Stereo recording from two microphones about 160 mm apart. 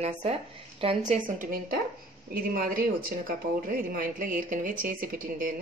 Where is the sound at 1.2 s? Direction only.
60° right (ahead or behind).